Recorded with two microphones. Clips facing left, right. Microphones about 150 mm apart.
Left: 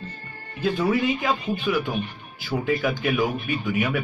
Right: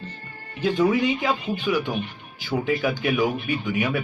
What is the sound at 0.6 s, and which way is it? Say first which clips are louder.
A man's voice: right 2 dB; 15° right (ahead or behind).